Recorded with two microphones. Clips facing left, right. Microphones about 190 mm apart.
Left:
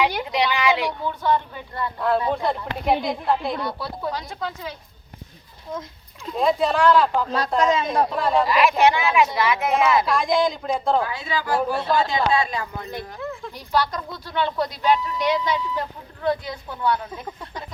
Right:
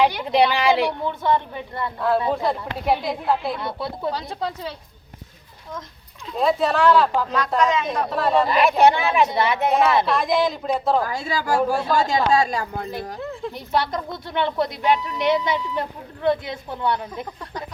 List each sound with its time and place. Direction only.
0.3 s a woman's voice: 30° right (ahead or behind)
2.3 s speech: centre (ahead or behind)
3.6 s speech: 25° right (ahead or behind)
6.3 s speech: centre (ahead or behind)
7.3 s speech: 30° left (ahead or behind)
8.1 s speech: centre (ahead or behind)
8.8 s a woman's voice: 35° right (ahead or behind)
10.1 s speech: 5° right (ahead or behind)
11.0 s a woman's voice: 40° right (ahead or behind); by 17.2 s 25° right (ahead or behind)